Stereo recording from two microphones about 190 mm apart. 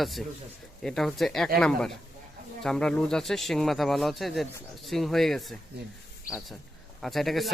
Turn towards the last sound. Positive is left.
turn(degrees=0)  # may be behind; listen again after turning